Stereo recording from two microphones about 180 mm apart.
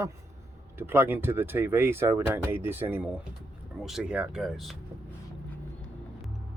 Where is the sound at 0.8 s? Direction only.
10° right (ahead or behind).